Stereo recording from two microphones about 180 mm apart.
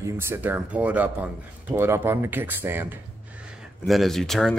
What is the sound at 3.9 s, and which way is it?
Speech, centre (ahead or behind).